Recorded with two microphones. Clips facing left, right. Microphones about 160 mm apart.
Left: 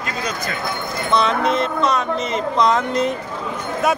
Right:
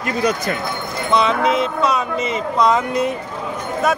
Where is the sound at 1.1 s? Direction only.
5° right (ahead or behind).